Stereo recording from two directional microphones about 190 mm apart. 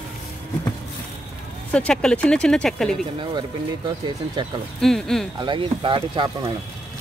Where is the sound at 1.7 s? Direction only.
5° left (ahead or behind).